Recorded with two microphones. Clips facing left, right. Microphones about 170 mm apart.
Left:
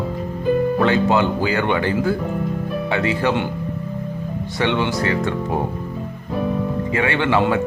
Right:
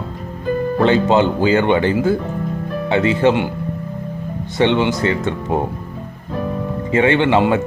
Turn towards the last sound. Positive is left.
turn(degrees=-20)  # may be behind; listen again after turning